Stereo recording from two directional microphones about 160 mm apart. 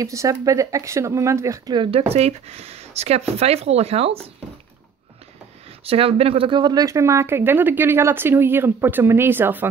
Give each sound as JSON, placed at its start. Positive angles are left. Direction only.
{"t": 0.0, "sound": "speech", "side_deg": -20}
{"t": 5.9, "sound": "speech", "side_deg": -35}